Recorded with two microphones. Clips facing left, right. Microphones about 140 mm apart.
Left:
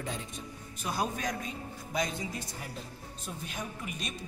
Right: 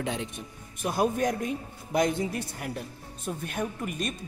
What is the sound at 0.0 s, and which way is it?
Speech, 80° right.